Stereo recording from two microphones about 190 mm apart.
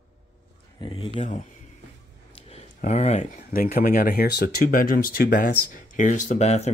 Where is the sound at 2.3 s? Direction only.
35° left (ahead or behind).